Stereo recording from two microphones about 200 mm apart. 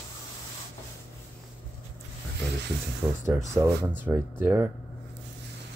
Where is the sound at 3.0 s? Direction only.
10° right (ahead or behind).